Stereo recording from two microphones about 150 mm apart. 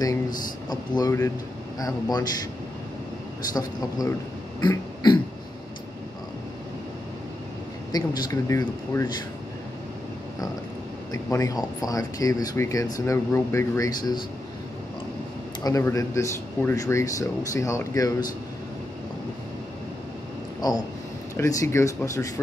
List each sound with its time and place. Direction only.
0.7 s speech: 25° left (ahead or behind)
4.6 s throat clearing: 30° left (ahead or behind)
7.9 s speech: 20° left (ahead or behind)
11.1 s speech: 20° left (ahead or behind)
15.6 s speech: 20° left (ahead or behind)
20.6 s speech: 25° left (ahead or behind)